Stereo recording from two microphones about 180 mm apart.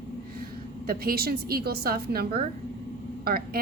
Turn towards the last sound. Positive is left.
turn(degrees=-55)  # may be behind; listen again after turning